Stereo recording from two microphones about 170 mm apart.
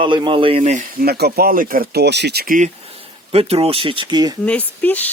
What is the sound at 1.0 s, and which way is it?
Speech, 65° right (ahead or behind).